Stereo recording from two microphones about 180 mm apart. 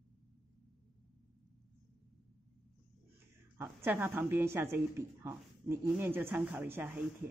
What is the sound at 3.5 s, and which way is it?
Speech, 10° right (ahead or behind).